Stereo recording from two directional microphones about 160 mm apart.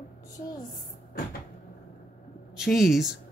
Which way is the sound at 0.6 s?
65° left (ahead or behind).